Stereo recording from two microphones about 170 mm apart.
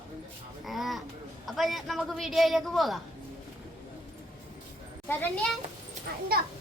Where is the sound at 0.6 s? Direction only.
Centre (ahead or behind).